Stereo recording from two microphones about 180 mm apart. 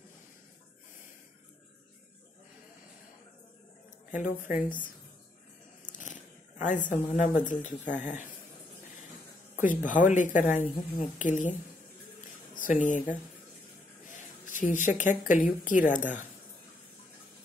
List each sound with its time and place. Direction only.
4.1 s speech: 45° left (ahead or behind)
5.9 s a sound: 45° left (ahead or behind)
7.2 s speech: 45° left (ahead or behind)
9.6 s speech: 45° left (ahead or behind)
12.5 s speech: 45° left (ahead or behind)
14.0 s speech: 45° left (ahead or behind)